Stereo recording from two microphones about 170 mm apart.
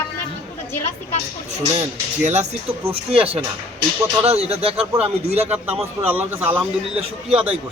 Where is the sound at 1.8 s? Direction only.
40° right (ahead or behind).